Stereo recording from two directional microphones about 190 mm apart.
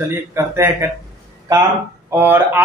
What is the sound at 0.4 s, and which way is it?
Speech, 15° right (ahead or behind).